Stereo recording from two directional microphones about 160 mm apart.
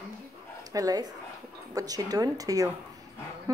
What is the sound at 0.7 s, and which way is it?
Speech, 25° right (ahead or behind).